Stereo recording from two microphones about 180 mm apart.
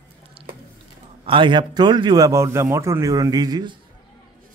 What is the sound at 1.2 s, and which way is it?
Speech, 25° right (ahead or behind).